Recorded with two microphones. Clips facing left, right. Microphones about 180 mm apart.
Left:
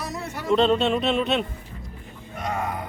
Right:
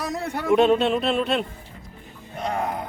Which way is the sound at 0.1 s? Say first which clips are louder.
Right 4 dB; 55° right (ahead or behind).